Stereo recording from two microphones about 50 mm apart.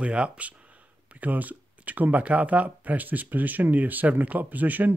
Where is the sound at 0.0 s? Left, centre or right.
Right.